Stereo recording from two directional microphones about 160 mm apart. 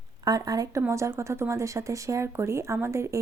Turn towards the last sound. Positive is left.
turn(degrees=-15)  # may be behind; listen again after turning